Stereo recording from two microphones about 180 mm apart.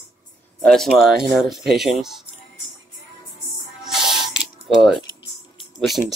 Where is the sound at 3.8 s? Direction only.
Centre (ahead or behind).